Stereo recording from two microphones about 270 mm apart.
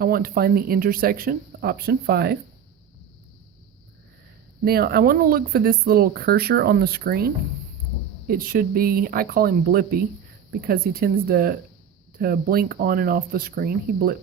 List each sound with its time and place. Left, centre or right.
0.0 s speech: right
4.6 s speech: right